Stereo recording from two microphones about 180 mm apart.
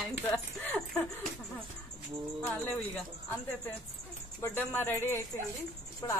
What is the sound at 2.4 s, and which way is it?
Speech, 10° left (ahead or behind).